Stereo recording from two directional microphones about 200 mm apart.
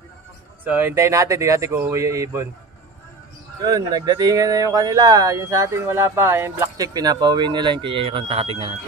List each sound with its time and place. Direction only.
0.7 s speech: 10° right (ahead or behind)
3.6 s speech: 20° right (ahead or behind)